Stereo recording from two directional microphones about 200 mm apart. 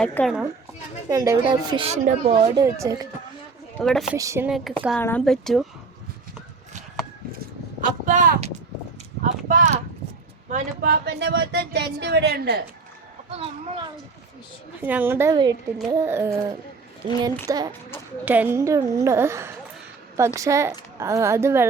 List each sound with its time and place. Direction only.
0.0 s a woman's voice: 5° left (ahead or behind)
1.1 s a woman's voice: 15° right (ahead or behind); by 2.5 s 35° right (ahead or behind)
2.6 s a woman's voice: 15° right (ahead or behind)
3.8 s a woman's voice: centre (ahead or behind)
4.2 s a woman's voice: 15° right (ahead or behind)
4.4 s a woman's voice: centre (ahead or behind)
7.3 s speech: 40° right (ahead or behind)
10.5 s speech: 50° right (ahead or behind)
13.3 s a woman's voice: 30° right (ahead or behind)
14.8 s a woman's voice: 10° right (ahead or behind)